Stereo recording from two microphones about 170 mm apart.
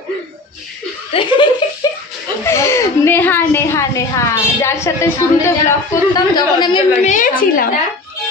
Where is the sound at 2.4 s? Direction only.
15° left (ahead or behind).